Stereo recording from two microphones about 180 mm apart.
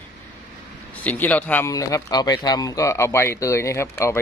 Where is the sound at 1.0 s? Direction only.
10° left (ahead or behind).